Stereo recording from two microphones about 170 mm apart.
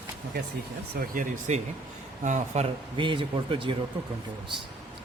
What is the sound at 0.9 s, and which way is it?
Speech, 55° right (ahead or behind).